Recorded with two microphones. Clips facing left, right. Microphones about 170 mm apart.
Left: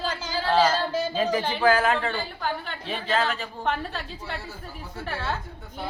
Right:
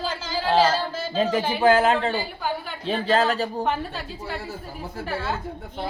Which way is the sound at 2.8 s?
35° right (ahead or behind).